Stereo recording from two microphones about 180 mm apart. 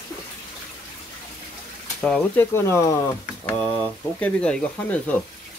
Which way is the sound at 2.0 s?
10° left (ahead or behind).